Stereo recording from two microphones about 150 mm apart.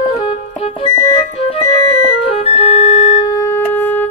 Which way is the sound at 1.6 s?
40° left (ahead or behind).